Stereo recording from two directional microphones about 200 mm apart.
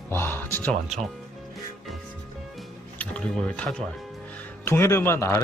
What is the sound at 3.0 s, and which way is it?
A man's voice, 5° left (ahead or behind).